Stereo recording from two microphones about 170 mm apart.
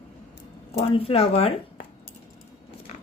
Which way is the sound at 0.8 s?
35° left (ahead or behind).